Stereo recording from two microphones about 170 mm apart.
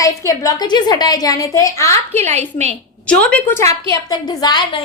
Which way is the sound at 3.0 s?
5° left (ahead or behind).